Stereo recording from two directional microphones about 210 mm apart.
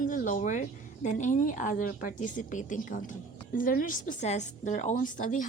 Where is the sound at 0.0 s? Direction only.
40° left (ahead or behind).